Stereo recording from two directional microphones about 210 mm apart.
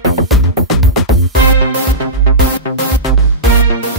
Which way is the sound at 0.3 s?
Centre (ahead or behind).